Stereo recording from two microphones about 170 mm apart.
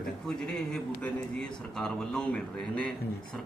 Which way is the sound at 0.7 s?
5° left (ahead or behind).